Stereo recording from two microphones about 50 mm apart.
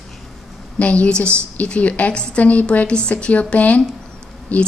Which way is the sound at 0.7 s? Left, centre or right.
Left.